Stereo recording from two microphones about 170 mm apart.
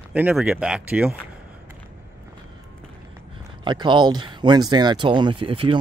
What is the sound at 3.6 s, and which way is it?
Speech, 25° right (ahead or behind).